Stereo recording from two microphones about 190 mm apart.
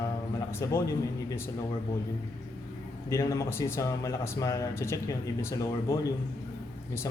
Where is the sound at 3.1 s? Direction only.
15° left (ahead or behind).